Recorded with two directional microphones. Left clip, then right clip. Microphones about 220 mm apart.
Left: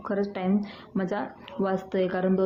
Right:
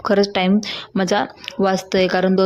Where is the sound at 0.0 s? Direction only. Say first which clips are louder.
Right 12 dB; 40° right (ahead or behind).